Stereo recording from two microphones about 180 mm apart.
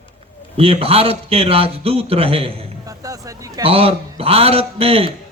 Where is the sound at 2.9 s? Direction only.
20° right (ahead or behind).